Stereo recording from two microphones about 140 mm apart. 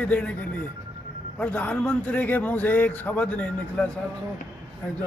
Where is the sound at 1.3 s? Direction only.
10° left (ahead or behind).